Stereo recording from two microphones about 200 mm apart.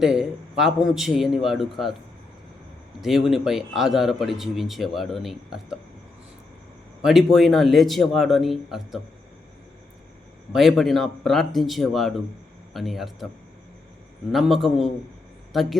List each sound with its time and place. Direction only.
0.0 s speech: centre (ahead or behind)
3.0 s speech: centre (ahead or behind)
7.0 s speech: centre (ahead or behind)
10.5 s speech: centre (ahead or behind)
14.3 s speech: centre (ahead or behind)